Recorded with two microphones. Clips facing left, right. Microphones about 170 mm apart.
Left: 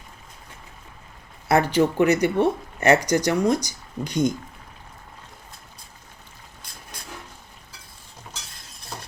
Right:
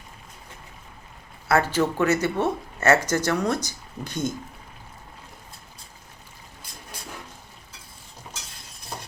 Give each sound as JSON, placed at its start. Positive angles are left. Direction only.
{"t": 1.5, "sound": "speech", "side_deg": 15}